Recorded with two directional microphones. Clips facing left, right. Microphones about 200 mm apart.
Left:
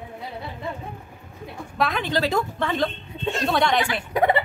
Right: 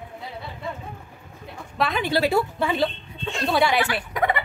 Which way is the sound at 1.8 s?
Centre (ahead or behind).